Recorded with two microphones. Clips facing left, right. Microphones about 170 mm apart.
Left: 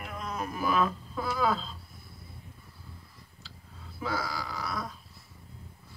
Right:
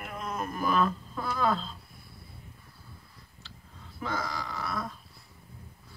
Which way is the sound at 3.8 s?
5° left (ahead or behind).